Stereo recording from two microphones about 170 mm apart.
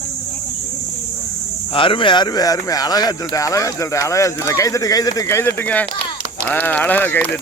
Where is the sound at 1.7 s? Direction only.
30° left (ahead or behind).